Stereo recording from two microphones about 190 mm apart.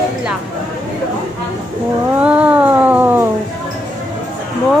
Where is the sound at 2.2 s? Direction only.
5° right (ahead or behind).